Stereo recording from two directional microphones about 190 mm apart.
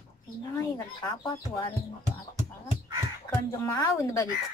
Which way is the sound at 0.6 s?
20° left (ahead or behind).